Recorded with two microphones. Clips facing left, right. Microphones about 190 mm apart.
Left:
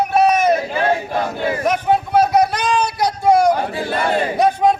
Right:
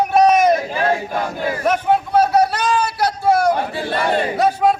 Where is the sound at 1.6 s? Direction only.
10° left (ahead or behind).